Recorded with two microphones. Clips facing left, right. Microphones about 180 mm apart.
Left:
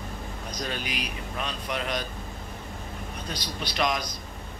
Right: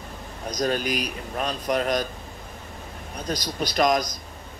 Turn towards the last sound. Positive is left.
turn(degrees=-45)  # may be behind; listen again after turning